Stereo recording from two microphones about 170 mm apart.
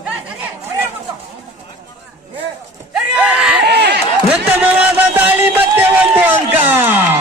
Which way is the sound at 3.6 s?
75° right (ahead or behind).